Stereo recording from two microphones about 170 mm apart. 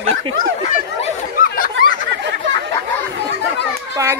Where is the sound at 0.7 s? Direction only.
50° left (ahead or behind).